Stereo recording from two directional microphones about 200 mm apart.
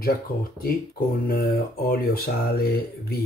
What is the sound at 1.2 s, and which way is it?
Speech, 45° left (ahead or behind).